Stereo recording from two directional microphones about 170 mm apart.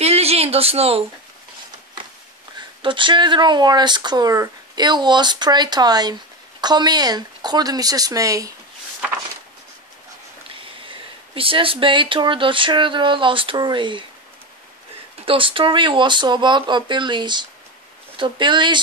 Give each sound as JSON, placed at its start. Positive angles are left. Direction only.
{"t": 0.0, "sound": "a sound", "side_deg": -35}
{"t": 2.8, "sound": "speech", "side_deg": -30}
{"t": 10.5, "sound": "speech", "side_deg": -30}
{"t": 15.2, "sound": "speech", "side_deg": -30}